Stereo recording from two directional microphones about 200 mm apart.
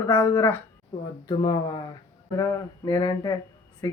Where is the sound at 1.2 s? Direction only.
20° left (ahead or behind).